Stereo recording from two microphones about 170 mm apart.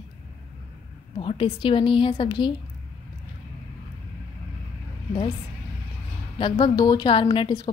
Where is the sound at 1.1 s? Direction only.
30° left (ahead or behind).